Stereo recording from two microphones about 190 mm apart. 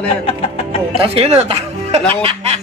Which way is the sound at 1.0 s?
30° right (ahead or behind).